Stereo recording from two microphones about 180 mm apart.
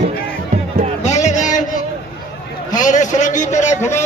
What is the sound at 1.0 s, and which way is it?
Music, 40° left (ahead or behind).